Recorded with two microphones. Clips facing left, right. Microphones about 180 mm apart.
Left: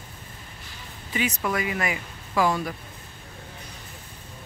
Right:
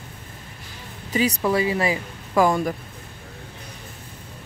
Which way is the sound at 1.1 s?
35° right (ahead or behind).